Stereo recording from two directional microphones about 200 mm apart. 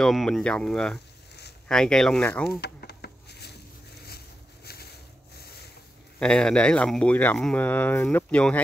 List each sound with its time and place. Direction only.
0.0 s speech: centre (ahead or behind)
2.6 s a sound: 55° left (ahead or behind)
6.1 s speech: 5° left (ahead or behind)